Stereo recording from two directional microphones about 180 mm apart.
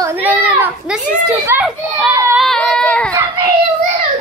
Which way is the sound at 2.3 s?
Centre (ahead or behind).